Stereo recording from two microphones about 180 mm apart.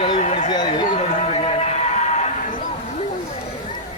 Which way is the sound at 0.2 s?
45° left (ahead or behind).